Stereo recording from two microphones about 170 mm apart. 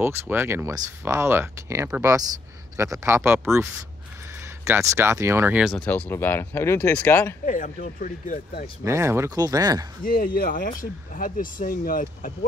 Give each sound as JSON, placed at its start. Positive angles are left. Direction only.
{"t": 0.0, "sound": "speech", "side_deg": -15}
{"t": 5.9, "sound": "speech", "side_deg": 10}
{"t": 7.4, "sound": "speech", "side_deg": 50}
{"t": 8.8, "sound": "speech", "side_deg": -15}
{"t": 10.0, "sound": "speech", "side_deg": 65}